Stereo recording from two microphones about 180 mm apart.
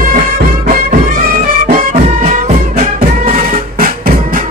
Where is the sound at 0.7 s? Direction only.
45° right (ahead or behind).